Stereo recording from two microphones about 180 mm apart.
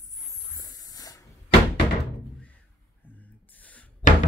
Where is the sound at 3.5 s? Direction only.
10° left (ahead or behind).